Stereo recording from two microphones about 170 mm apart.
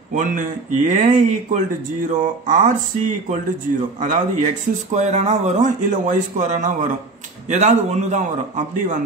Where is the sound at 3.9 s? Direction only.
50° right (ahead or behind).